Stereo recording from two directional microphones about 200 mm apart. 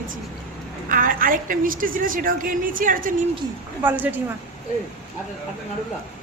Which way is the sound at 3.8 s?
10° right (ahead or behind).